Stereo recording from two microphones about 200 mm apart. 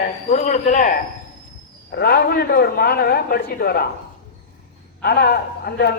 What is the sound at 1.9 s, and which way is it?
A man's voice, 50° left (ahead or behind).